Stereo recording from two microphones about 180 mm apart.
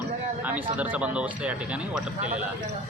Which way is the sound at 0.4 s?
10° right (ahead or behind).